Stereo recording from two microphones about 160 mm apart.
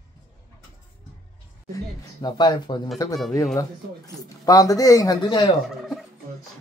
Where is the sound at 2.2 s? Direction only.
25° left (ahead or behind).